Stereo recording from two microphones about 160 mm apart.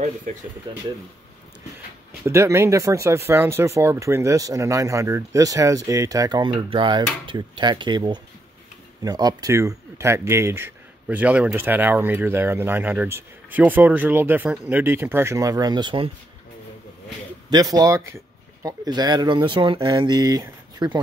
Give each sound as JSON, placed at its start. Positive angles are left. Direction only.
{"t": 0.0, "sound": "speech", "side_deg": -55}
{"t": 2.2, "sound": "speech", "side_deg": -15}
{"t": 17.5, "sound": "speech", "side_deg": -25}